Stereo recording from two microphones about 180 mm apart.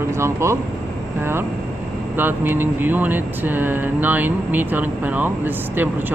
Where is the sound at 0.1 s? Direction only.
15° right (ahead or behind).